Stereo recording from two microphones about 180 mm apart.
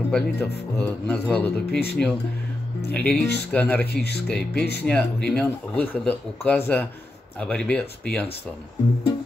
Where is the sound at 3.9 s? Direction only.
65° left (ahead or behind).